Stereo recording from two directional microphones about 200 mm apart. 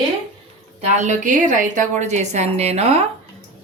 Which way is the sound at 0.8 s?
35° right (ahead or behind).